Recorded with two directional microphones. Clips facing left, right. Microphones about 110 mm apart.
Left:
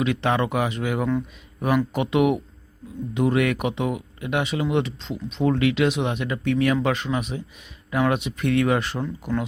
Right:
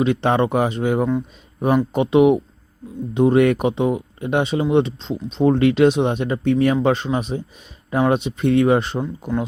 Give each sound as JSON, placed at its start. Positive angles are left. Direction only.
{"t": 0.0, "sound": "speech", "side_deg": -30}